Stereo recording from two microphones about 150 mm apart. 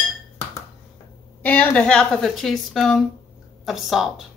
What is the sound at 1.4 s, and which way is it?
A woman's voice, 10° left (ahead or behind).